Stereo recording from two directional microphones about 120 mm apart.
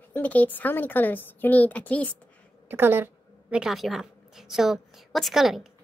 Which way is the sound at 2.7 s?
15° right (ahead or behind).